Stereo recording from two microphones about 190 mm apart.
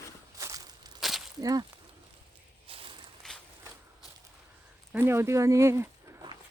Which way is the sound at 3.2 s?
5° left (ahead or behind).